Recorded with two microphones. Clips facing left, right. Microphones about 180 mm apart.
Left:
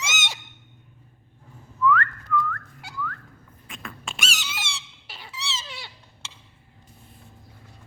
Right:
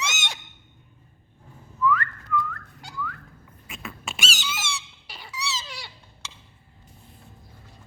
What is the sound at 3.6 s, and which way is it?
Dog, 5° right (ahead or behind).